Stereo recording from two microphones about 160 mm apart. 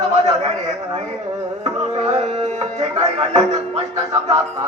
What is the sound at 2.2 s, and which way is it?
Music, 45° right (ahead or behind).